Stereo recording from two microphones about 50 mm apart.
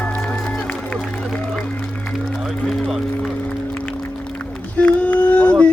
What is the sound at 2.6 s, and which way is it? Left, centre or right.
Music, centre.